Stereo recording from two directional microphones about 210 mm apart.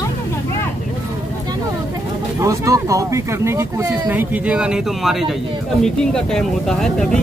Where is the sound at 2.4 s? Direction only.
15° right (ahead or behind).